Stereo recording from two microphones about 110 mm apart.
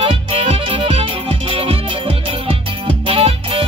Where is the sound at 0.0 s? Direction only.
55° right (ahead or behind).